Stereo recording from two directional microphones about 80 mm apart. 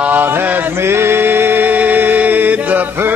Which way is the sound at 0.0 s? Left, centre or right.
Right.